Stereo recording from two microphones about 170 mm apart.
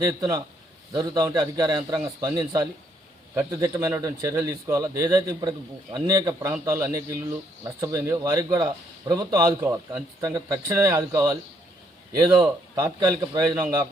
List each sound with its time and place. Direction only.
0.0 s a man's voice: 20° right (ahead or behind)